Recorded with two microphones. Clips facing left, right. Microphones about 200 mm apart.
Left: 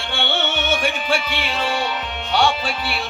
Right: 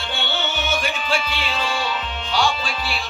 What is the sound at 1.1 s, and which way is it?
Music, 60° left (ahead or behind).